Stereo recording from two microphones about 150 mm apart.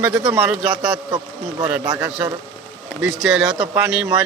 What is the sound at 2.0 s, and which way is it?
A man's voice, 10° right (ahead or behind).